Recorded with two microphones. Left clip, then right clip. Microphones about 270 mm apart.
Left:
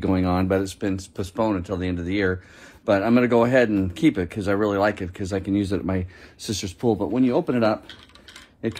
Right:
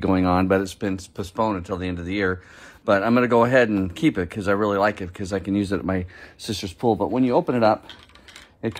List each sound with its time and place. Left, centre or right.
0.0 s speech: right